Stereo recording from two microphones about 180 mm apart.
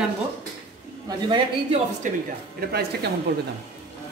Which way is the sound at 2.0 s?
45° right (ahead or behind).